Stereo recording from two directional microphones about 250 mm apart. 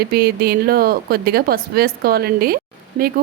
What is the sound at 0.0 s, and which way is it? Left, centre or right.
Speech, right.